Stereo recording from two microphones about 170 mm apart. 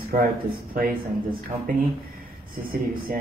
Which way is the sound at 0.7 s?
60° right (ahead or behind).